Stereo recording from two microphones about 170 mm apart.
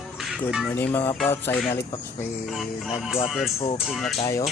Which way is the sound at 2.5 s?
Centre (ahead or behind).